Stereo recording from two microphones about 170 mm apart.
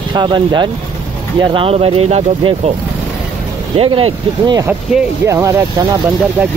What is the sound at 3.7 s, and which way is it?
Speech, 35° right (ahead or behind).